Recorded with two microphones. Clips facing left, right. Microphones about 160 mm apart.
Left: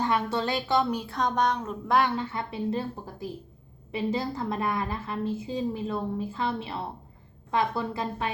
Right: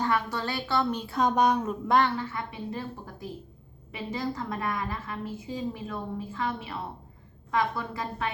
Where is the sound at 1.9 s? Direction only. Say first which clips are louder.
Even; 10° left (ahead or behind).